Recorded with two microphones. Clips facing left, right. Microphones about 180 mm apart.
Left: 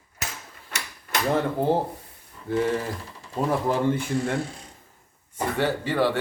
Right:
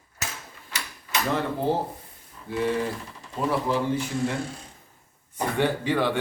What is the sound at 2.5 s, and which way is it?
Cutlery, 55° left (ahead or behind).